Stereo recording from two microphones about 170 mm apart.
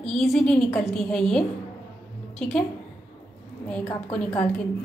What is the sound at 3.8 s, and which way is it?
Speech, 15° left (ahead or behind).